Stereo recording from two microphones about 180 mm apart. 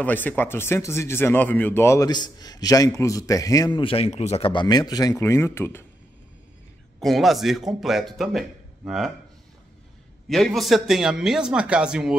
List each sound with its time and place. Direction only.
0.0 s speech: 10° left (ahead or behind)
7.0 s speech: centre (ahead or behind)
10.2 s speech: centre (ahead or behind)